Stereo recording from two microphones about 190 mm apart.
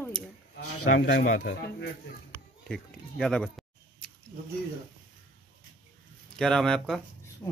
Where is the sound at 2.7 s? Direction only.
Centre (ahead or behind).